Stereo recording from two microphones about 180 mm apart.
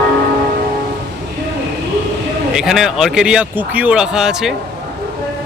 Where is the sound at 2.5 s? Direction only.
Centre (ahead or behind).